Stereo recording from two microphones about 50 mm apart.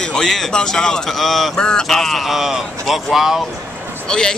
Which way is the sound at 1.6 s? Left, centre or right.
Centre.